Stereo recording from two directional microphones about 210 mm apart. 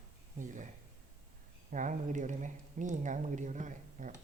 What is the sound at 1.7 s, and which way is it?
Speech, 35° right (ahead or behind).